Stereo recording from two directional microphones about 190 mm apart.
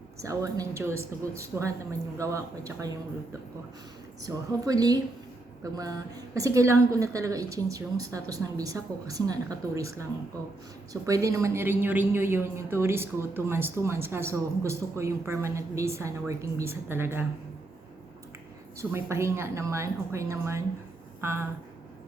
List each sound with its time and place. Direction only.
0.2 s a woman's voice: 15° right (ahead or behind)
4.2 s a woman's voice: 20° right (ahead or behind)
18.8 s a woman's voice: 15° right (ahead or behind)